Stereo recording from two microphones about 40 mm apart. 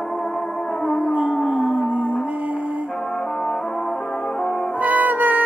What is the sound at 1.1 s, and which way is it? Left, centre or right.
Music, right.